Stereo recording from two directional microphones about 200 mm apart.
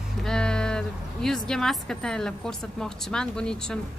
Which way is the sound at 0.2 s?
5° left (ahead or behind).